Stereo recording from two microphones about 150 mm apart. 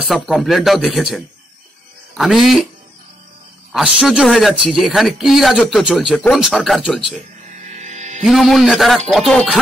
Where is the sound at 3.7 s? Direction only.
5° right (ahead or behind).